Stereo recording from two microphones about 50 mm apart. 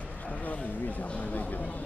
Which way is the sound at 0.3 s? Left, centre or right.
Left.